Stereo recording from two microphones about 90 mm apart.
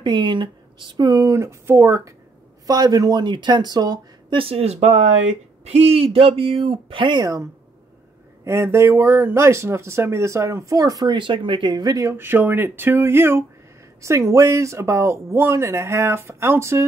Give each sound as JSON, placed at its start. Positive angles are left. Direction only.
{"t": 0.0, "sound": "speech", "side_deg": -60}
{"t": 2.6, "sound": "speech", "side_deg": -45}
{"t": 4.3, "sound": "speech", "side_deg": -85}
{"t": 5.9, "sound": "speech", "side_deg": -90}
{"t": 8.5, "sound": "speech", "side_deg": -30}
{"t": 11.1, "sound": "speech", "side_deg": -65}
{"t": 12.3, "sound": "speech", "side_deg": -20}